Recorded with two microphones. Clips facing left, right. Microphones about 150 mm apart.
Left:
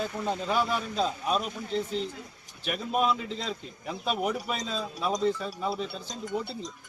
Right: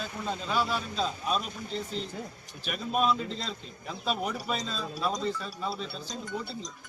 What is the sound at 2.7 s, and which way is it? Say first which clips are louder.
A man's voice: even; 15° left (ahead or behind).